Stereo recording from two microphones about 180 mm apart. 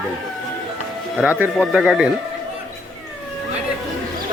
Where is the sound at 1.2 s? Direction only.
10° right (ahead or behind).